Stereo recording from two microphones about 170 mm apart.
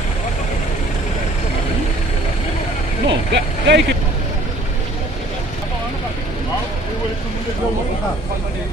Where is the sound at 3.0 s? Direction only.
90° right.